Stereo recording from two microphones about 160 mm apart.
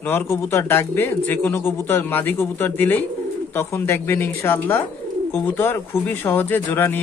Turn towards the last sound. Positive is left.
turn(degrees=10)  # may be behind; listen again after turning